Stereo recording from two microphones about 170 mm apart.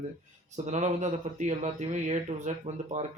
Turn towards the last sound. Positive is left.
turn(degrees=-45)  # may be behind; listen again after turning